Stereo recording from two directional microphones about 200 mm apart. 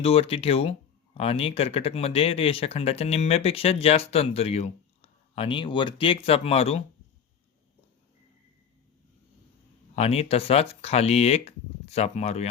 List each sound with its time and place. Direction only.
0.0 s speech: 30° left (ahead or behind)
9.9 s speech: 30° left (ahead or behind)